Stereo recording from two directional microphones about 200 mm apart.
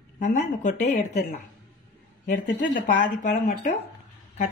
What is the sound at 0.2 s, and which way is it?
Speech, 40° left (ahead or behind).